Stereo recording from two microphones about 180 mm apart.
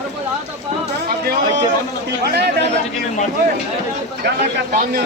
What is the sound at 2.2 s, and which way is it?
Speech, 65° right (ahead or behind).